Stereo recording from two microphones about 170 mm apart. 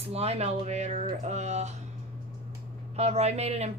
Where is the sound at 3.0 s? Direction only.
40° right (ahead or behind).